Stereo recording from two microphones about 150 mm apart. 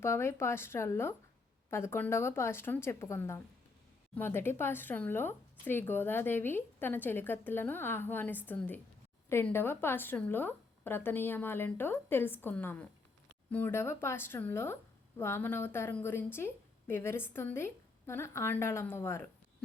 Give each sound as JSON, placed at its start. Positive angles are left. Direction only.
{"t": 0.0, "sound": "speech", "side_deg": 15}